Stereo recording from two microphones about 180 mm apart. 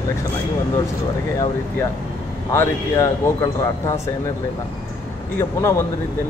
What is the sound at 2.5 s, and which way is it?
Speech, 15° left (ahead or behind).